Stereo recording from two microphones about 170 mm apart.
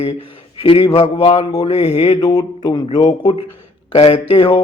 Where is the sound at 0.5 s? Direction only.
30° left (ahead or behind).